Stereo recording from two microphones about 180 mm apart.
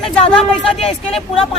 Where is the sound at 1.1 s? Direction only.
30° left (ahead or behind).